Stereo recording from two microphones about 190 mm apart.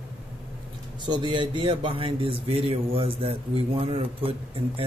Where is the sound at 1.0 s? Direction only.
25° right (ahead or behind).